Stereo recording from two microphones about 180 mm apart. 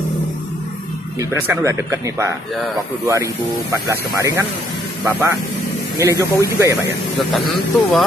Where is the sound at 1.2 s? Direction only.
15° right (ahead or behind).